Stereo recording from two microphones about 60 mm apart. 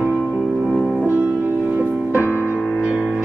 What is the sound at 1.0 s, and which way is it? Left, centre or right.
Music, right.